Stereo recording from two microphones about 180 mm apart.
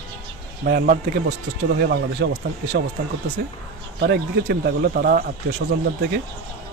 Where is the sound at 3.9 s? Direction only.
70° right (ahead or behind).